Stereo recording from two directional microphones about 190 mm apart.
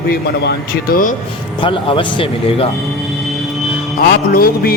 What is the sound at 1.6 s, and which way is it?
Speech, 25° left (ahead or behind).